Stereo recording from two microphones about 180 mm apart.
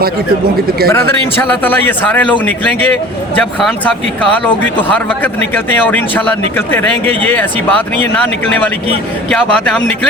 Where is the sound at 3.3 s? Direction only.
10° left (ahead or behind).